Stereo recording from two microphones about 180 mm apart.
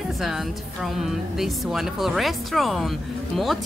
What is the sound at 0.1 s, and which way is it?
Speech, centre (ahead or behind).